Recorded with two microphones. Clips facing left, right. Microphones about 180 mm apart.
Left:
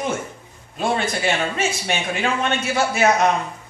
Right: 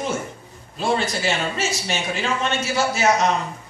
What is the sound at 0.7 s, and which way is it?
A man's voice, 55° left (ahead or behind).